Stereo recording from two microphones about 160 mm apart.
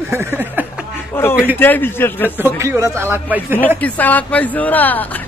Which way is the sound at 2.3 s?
15° right (ahead or behind).